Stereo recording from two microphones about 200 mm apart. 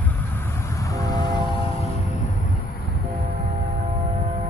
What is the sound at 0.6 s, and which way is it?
Train, 15° left (ahead or behind).